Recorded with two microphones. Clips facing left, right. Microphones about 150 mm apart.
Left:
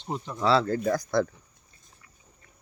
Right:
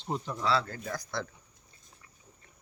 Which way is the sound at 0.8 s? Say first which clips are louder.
Left 11 dB; 50° left (ahead or behind).